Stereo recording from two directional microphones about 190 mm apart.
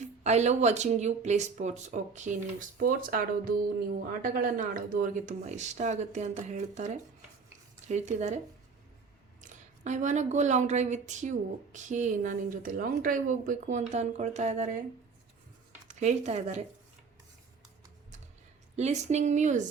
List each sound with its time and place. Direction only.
0.0 s speech: 35° right (ahead or behind)
9.4 s speech: 40° right (ahead or behind)
15.9 s speech: 35° right (ahead or behind)
18.8 s speech: 35° right (ahead or behind)